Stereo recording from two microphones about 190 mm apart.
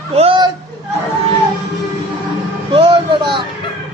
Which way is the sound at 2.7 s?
25° right (ahead or behind).